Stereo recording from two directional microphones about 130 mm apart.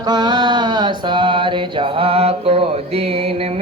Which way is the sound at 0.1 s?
35° right (ahead or behind).